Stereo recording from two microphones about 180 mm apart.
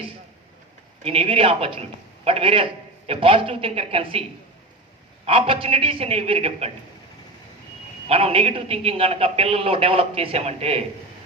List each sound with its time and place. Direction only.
1.0 s a man's voice: 35° right (ahead or behind)
5.2 s a man's voice: 30° right (ahead or behind)
8.0 s a man's voice: 30° right (ahead or behind)